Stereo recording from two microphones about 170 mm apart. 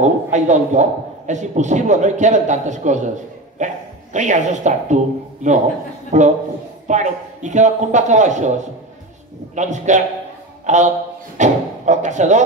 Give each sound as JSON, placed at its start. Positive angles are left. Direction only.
{"t": 0.0, "sound": "a man's voice", "side_deg": -45}
{"t": 9.6, "sound": "a man's voice", "side_deg": -45}